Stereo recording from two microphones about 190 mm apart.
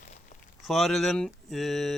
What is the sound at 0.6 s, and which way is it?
Speech, centre (ahead or behind).